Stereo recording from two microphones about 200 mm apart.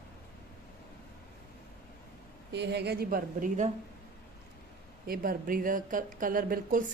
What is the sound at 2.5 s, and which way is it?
Speech, 60° right (ahead or behind).